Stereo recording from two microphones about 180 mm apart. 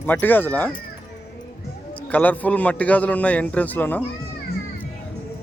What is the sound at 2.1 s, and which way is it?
Speech, 10° left (ahead or behind).